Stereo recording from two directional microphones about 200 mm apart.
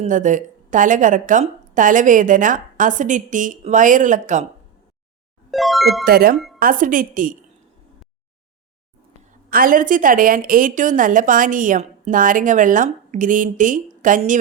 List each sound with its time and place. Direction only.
0.0 s a woman's voice: 40° right (ahead or behind)
5.5 s speech: centre (ahead or behind)
6.1 s a woman's voice: 50° right (ahead or behind)
9.5 s a woman's voice: 45° right (ahead or behind)